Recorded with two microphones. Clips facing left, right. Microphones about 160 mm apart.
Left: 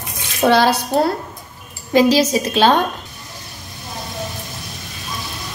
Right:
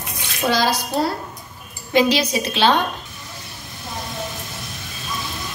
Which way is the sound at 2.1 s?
40° left (ahead or behind).